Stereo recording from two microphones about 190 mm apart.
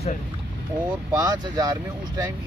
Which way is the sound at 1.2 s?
20° right (ahead or behind).